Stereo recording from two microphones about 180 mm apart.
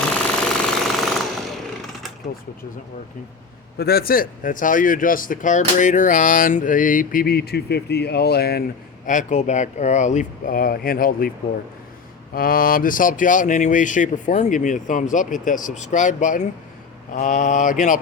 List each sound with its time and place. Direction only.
0.3 s jackhammer: 5° left (ahead or behind)
3.8 s a man's voice: 60° left (ahead or behind)
9.0 s a man's voice: 45° left (ahead or behind)
12.3 s a man's voice: 55° left (ahead or behind)